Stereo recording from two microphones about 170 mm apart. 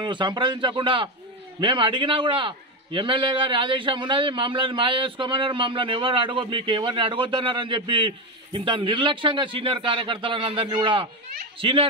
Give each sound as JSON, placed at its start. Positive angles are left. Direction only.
{"t": 0.0, "sound": "a man's voice", "side_deg": -25}